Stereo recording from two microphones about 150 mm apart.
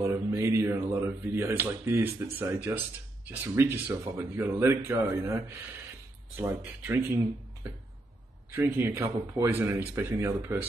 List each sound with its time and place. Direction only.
0.0 s speech: 20° right (ahead or behind)
8.5 s speech: 15° right (ahead or behind)